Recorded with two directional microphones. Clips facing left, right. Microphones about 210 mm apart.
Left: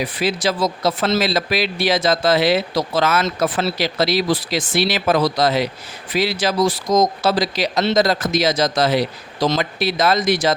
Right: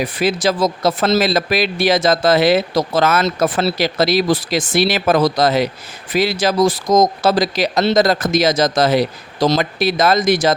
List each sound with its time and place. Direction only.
0.0 s speech: 45° right (ahead or behind)